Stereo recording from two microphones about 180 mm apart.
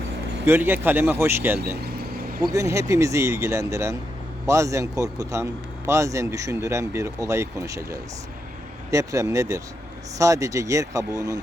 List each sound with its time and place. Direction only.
0.4 s a man's voice: 10° right (ahead or behind)
1.8 s vehicle: 60° right (ahead or behind)
2.4 s a man's voice: 20° right (ahead or behind)